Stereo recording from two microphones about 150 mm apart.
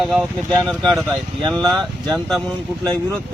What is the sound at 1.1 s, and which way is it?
Speech, 30° right (ahead or behind).